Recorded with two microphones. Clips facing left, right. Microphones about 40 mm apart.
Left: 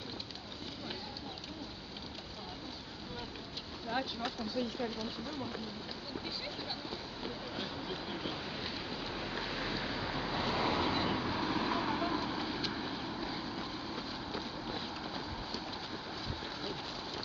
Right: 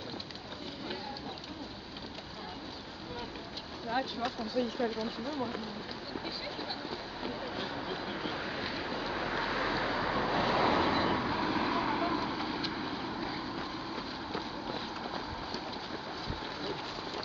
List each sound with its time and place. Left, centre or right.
3.9 s speech: centre
4.6 s speech: centre
4.9 s speech: centre
6.9 s vehicle: centre